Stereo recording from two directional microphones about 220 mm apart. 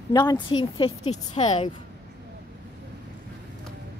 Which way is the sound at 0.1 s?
15° left (ahead or behind).